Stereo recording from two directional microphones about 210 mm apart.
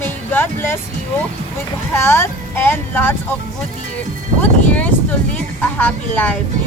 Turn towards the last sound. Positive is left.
turn(degrees=10)  # may be behind; listen again after turning